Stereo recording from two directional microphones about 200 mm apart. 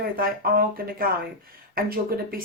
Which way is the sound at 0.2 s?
45° right (ahead or behind).